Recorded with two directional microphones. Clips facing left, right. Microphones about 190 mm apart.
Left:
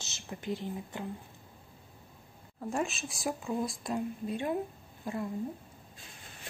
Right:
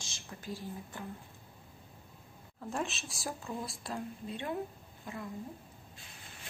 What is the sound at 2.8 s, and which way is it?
Speech, centre (ahead or behind).